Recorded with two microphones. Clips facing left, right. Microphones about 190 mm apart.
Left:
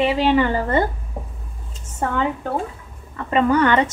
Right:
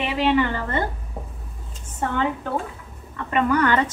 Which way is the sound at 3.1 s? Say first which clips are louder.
Left 3 dB; 30° left (ahead or behind).